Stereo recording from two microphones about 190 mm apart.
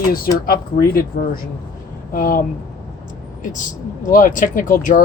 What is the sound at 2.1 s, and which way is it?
Speech, 50° left (ahead or behind).